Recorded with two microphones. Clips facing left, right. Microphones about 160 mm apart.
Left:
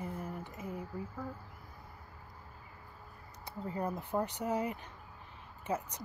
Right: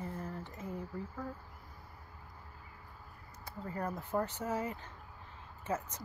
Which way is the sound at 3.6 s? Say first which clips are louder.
Left 2 dB; 15° left (ahead or behind).